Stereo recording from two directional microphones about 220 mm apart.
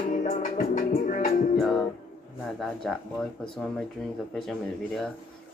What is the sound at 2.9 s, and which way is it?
A man's voice, centre (ahead or behind).